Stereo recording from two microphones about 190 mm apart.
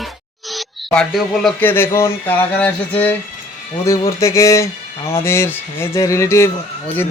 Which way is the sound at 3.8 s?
15° left (ahead or behind).